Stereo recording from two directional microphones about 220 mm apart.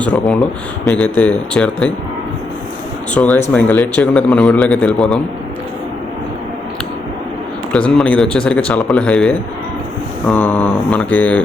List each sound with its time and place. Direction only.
0.0 s a man's voice: 5° left (ahead or behind)
3.2 s mantra: 5° left (ahead or behind)
3.5 s a man's voice: 5° left (ahead or behind)
7.7 s a man's voice: 5° left (ahead or behind)
10.2 s mantra: 10° left (ahead or behind)